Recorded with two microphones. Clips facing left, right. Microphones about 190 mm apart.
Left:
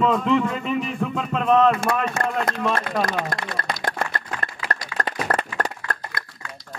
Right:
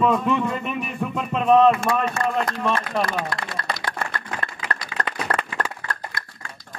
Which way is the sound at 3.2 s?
50° left (ahead or behind).